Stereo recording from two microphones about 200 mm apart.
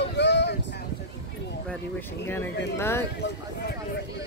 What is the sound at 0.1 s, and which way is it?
Vehicle, 60° left (ahead or behind).